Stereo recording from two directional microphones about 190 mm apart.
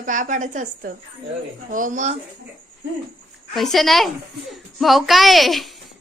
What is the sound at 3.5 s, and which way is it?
A woman's voice, centre (ahead or behind).